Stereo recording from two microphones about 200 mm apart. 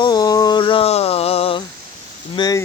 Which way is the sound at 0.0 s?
20° left (ahead or behind).